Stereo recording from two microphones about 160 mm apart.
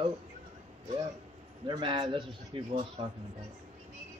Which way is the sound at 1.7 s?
30° right (ahead or behind).